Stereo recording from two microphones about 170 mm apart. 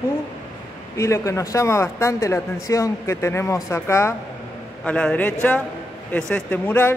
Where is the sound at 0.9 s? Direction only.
20° left (ahead or behind).